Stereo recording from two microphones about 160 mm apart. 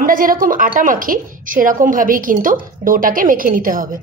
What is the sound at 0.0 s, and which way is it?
A woman's voice, 60° right (ahead or behind).